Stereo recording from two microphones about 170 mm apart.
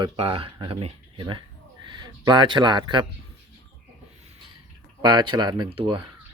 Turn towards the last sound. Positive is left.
turn(degrees=-30)  # may be behind; listen again after turning